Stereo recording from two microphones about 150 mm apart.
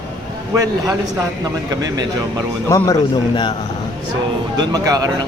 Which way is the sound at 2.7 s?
20° left (ahead or behind).